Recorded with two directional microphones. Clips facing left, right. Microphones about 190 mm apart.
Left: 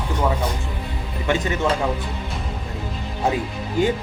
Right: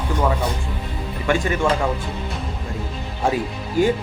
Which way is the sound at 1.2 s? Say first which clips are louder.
Right 2 dB; 20° left (ahead or behind).